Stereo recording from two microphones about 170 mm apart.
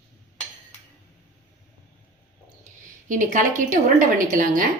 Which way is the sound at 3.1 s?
50° right (ahead or behind).